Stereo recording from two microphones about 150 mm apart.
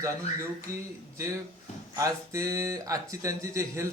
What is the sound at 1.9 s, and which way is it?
Speech, 20° right (ahead or behind).